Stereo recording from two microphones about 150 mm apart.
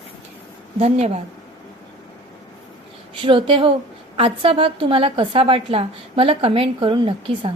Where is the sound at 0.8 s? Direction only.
45° right (ahead or behind).